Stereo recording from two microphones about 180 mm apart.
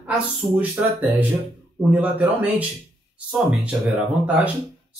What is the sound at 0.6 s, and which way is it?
Speech, 10° right (ahead or behind).